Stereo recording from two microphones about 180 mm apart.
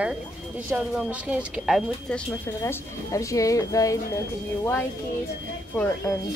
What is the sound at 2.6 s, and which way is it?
A woman's voice, 15° left (ahead or behind).